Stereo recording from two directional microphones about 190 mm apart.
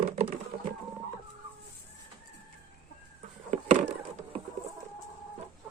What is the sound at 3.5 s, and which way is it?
Wood, 35° right (ahead or behind).